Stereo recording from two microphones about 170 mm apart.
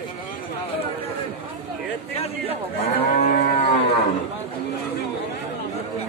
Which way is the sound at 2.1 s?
35° left (ahead or behind).